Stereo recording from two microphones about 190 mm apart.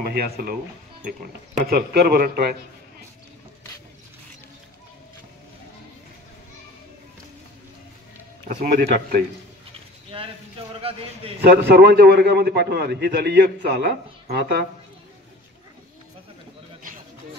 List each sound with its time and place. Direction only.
0.1 s speech: 50° right (ahead or behind)
8.5 s speech: 45° right (ahead or behind)
10.8 s speech: 30° right (ahead or behind)
11.4 s a man's voice: 55° right (ahead or behind)